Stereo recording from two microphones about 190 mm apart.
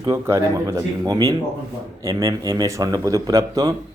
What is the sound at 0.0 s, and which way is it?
Speech, 20° right (ahead or behind).